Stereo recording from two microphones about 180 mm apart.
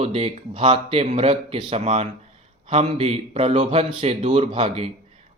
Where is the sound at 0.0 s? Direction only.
35° right (ahead or behind).